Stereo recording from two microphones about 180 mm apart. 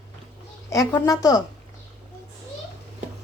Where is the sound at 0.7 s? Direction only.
20° left (ahead or behind).